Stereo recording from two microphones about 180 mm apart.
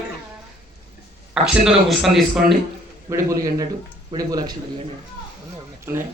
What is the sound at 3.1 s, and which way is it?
A man's voice, 15° right (ahead or behind).